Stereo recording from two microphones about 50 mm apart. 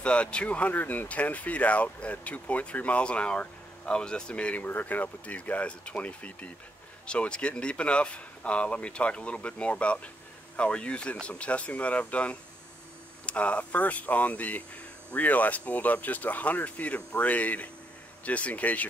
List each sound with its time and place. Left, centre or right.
0.0 s speech: left
4.6 s speech: left